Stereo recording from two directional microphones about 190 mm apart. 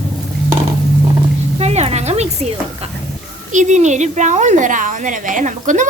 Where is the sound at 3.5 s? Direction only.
40° right (ahead or behind).